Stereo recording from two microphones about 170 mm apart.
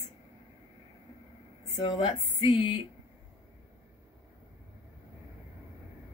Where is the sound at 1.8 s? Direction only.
30° left (ahead or behind).